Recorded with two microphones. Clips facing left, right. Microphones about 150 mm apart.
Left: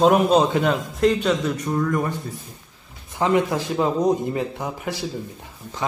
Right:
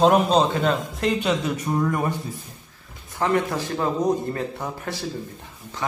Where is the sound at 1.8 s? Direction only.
15° right (ahead or behind).